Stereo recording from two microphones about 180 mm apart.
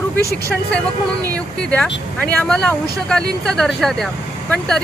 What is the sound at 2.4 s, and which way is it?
Speech, 10° left (ahead or behind).